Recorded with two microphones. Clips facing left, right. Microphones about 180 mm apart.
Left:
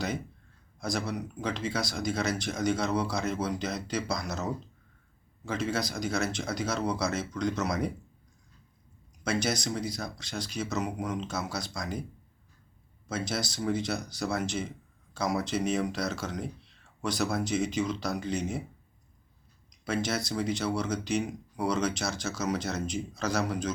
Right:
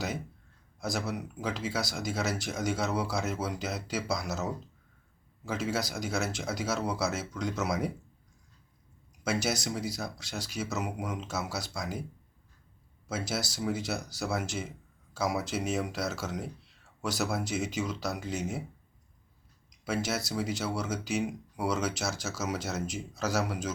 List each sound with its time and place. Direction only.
0.8 s speech: 5° right (ahead or behind)
9.2 s speech: 5° right (ahead or behind)
13.1 s speech: 5° right (ahead or behind)
19.8 s speech: 5° right (ahead or behind)